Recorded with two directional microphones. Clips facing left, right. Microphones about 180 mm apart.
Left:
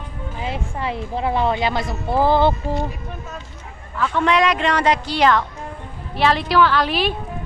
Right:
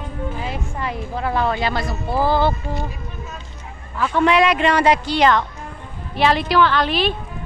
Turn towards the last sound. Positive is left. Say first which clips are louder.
# even
turn(degrees=5)  # may be behind; listen again after turning